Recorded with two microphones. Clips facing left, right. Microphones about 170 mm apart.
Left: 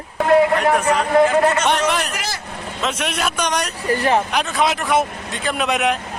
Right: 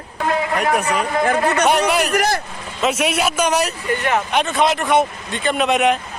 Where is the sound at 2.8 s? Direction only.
5° right (ahead or behind).